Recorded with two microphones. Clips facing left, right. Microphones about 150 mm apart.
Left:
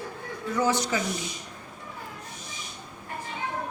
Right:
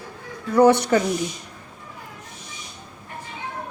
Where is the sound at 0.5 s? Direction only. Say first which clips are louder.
Right 10 dB; 65° right (ahead or behind).